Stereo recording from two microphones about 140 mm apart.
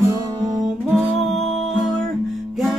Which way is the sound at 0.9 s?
Centre (ahead or behind).